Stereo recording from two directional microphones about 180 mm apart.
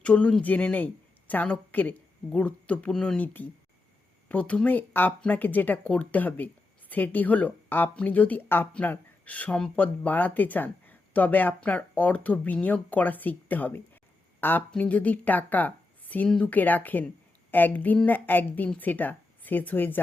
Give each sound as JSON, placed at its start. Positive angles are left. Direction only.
{"t": 0.0, "sound": "speech", "side_deg": 5}